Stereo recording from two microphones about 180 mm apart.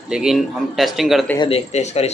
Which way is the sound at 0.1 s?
5° right (ahead or behind).